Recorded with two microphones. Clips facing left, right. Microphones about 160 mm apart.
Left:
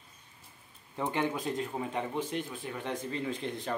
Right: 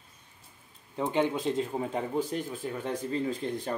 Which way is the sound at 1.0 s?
15° right (ahead or behind).